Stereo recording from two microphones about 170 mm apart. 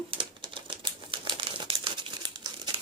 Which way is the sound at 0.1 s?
30° right (ahead or behind).